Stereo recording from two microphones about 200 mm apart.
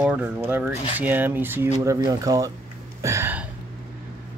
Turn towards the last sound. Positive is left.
turn(degrees=-10)  # may be behind; listen again after turning